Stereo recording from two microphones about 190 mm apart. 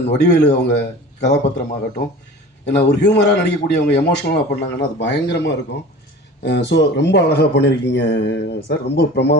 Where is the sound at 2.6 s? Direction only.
65° left (ahead or behind).